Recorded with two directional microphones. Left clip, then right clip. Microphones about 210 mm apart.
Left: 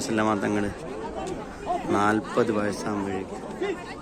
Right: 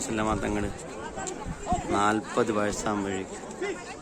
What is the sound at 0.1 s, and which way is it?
Speech, 5° right (ahead or behind).